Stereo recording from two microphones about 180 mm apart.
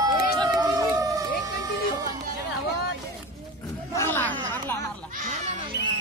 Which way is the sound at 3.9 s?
15° left (ahead or behind).